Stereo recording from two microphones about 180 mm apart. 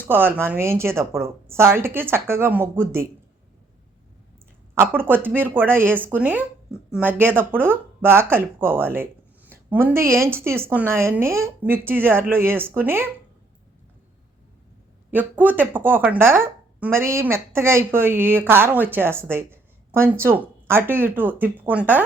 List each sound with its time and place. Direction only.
0.1 s speech: 10° right (ahead or behind)
4.7 s speech: 10° right (ahead or behind)
15.1 s speech: 10° right (ahead or behind)